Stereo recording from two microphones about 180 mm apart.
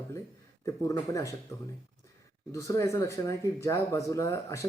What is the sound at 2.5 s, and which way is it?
Speech, 20° left (ahead or behind).